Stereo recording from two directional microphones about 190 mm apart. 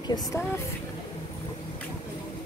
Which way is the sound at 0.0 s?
20° left (ahead or behind).